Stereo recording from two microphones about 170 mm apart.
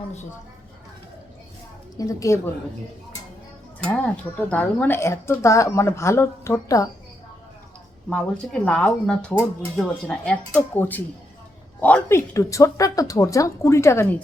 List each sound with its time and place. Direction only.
2.0 s a woman's voice: 20° left (ahead or behind)
3.8 s speech: 10° left (ahead or behind)
8.1 s speech: 5° left (ahead or behind)